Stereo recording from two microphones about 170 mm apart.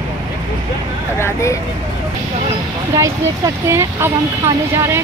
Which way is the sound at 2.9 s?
15° right (ahead or behind).